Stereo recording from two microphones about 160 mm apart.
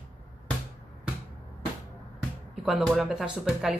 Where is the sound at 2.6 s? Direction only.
Centre (ahead or behind).